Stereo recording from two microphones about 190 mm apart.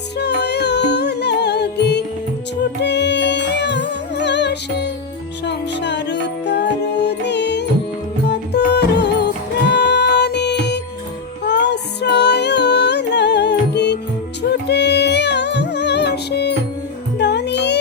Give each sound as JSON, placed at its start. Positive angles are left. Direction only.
{"t": 0.2, "sound": "music", "side_deg": 60}